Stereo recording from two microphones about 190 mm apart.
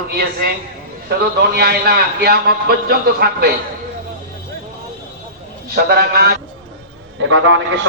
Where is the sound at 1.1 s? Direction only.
55° right (ahead or behind).